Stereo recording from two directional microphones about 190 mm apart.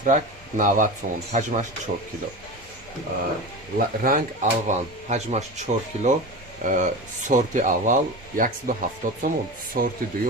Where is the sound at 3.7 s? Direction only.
50° right (ahead or behind).